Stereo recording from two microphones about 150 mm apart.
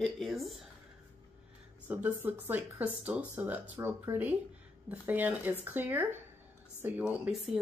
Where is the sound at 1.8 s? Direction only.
10° right (ahead or behind).